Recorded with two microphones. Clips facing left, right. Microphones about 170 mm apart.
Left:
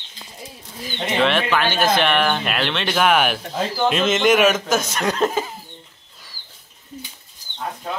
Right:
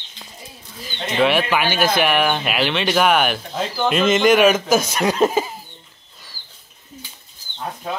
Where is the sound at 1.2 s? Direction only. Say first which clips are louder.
Right 2 dB; 10° right (ahead or behind).